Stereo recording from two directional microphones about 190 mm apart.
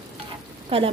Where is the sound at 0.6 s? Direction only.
30° right (ahead or behind).